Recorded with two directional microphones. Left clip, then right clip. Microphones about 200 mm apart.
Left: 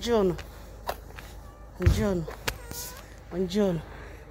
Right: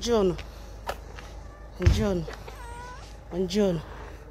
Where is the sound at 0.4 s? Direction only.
20° left (ahead or behind).